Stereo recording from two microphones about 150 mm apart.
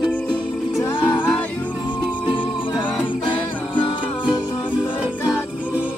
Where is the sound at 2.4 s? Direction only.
35° left (ahead or behind).